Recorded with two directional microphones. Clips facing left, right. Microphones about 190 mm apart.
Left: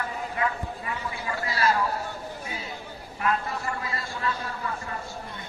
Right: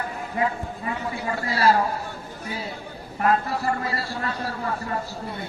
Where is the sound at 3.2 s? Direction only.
40° right (ahead or behind).